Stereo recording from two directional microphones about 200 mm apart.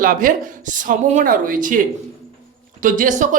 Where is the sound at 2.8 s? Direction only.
40° right (ahead or behind).